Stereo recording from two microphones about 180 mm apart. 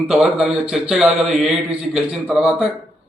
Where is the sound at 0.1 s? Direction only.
Centre (ahead or behind).